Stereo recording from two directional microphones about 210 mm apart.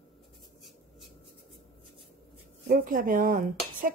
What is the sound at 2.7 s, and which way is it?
Dishes, 40° right (ahead or behind).